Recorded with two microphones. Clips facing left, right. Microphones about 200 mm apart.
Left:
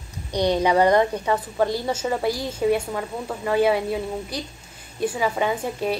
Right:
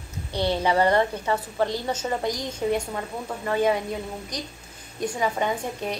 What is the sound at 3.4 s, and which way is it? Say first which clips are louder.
Speech: left 3 dB; 10° left (ahead or behind).